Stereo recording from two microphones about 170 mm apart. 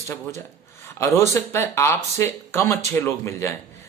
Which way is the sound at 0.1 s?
15° left (ahead or behind).